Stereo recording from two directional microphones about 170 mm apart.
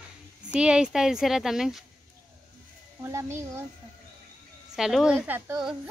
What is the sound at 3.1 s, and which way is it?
Speech, 15° right (ahead or behind).